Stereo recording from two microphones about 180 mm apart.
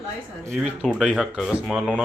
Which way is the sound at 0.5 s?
Centre (ahead or behind).